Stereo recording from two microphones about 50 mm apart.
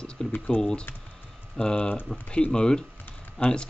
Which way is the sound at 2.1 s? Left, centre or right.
Centre.